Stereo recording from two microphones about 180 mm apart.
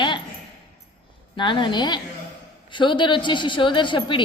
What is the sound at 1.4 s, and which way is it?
A woman's voice, 25° left (ahead or behind).